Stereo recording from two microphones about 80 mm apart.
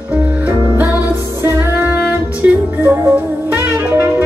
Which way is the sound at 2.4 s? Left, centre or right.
Centre.